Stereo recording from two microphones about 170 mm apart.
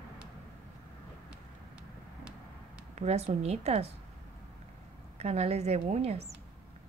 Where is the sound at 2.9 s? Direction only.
40° right (ahead or behind).